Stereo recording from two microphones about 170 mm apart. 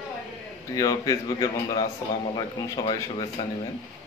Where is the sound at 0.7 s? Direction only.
20° left (ahead or behind).